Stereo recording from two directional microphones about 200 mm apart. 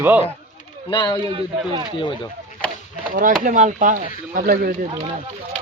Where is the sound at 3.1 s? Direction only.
40° right (ahead or behind).